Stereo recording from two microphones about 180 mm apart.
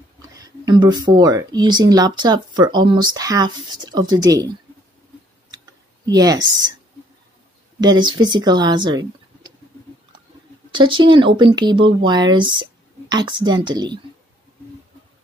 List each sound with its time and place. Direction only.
0.3 s speech: 20° right (ahead or behind)
6.0 s speech: 20° right (ahead or behind)
7.8 s speech: 25° right (ahead or behind)
10.7 s speech: 25° right (ahead or behind)